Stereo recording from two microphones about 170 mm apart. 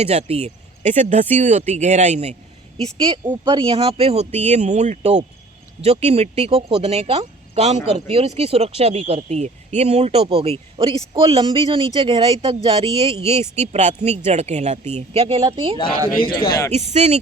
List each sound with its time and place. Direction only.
0.0 s speech: 40° right (ahead or behind)
2.8 s speech: 30° right (ahead or behind)